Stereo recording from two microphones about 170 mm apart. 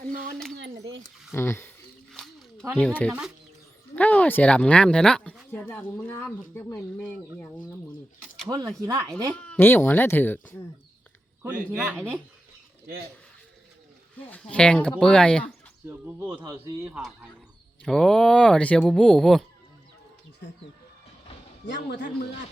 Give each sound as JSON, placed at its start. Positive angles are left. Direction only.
{"t": 1.3, "sound": "speech", "side_deg": 15}
{"t": 2.1, "sound": "a sound", "side_deg": 5}
{"t": 2.7, "sound": "speech", "side_deg": 5}
{"t": 3.1, "sound": "speech", "side_deg": -5}
{"t": 3.9, "sound": "speech", "side_deg": 10}
{"t": 8.4, "sound": "speech", "side_deg": -20}
{"t": 9.3, "sound": "speech", "side_deg": 5}
{"t": 14.5, "sound": "speech", "side_deg": 5}
{"t": 15.9, "sound": "speech", "side_deg": -10}
{"t": 16.9, "sound": "speech", "side_deg": -5}
{"t": 21.8, "sound": "a man's voice", "side_deg": 90}